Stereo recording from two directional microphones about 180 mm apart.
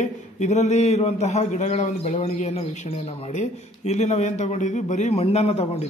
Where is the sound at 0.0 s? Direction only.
40° left (ahead or behind).